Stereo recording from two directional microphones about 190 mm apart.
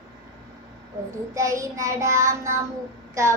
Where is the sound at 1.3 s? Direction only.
15° right (ahead or behind).